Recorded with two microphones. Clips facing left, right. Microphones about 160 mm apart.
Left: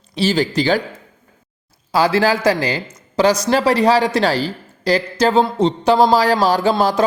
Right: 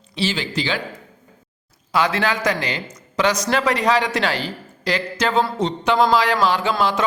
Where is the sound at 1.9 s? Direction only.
30° left (ahead or behind).